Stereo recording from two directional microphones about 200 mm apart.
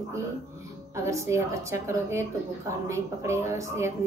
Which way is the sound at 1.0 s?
15° right (ahead or behind).